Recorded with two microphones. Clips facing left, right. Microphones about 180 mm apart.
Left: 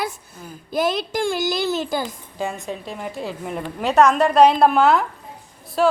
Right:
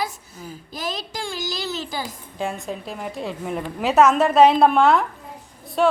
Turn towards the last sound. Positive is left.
turn(degrees=0)  # may be behind; listen again after turning